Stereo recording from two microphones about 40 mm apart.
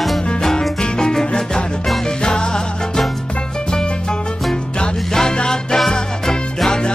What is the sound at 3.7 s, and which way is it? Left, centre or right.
Music, left.